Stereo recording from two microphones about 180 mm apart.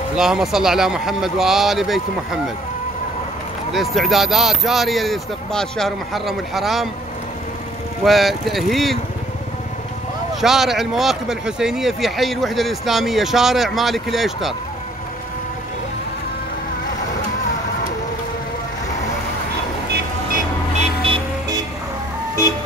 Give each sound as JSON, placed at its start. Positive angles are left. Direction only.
{"t": 0.1, "sound": "speech", "side_deg": 0}
{"t": 3.7, "sound": "speech", "side_deg": 0}
{"t": 8.0, "sound": "speech", "side_deg": 0}
{"t": 10.4, "sound": "speech", "side_deg": 0}
{"t": 20.7, "sound": "vehicle", "side_deg": -30}